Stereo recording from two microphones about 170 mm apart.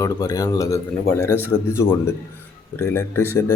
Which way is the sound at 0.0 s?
20° left (ahead or behind).